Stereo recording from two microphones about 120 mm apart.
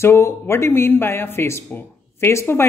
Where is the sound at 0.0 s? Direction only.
20° left (ahead or behind).